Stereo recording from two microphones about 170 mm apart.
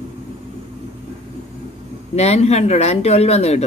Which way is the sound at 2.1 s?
40° left (ahead or behind).